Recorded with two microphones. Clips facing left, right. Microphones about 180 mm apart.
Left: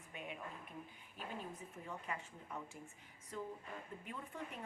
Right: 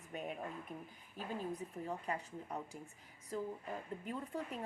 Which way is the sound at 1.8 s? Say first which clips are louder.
Right 4 dB; 35° right (ahead or behind).